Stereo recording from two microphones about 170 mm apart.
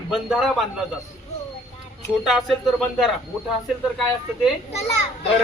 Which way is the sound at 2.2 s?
Centre (ahead or behind).